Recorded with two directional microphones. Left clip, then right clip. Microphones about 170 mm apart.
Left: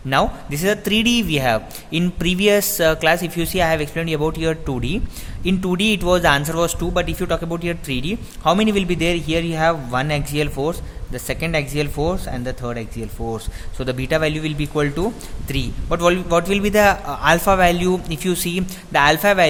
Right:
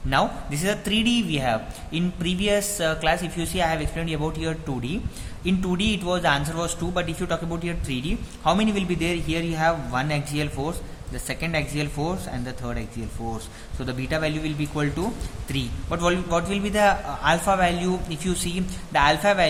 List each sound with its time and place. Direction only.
0.1 s a man's voice: 40° left (ahead or behind)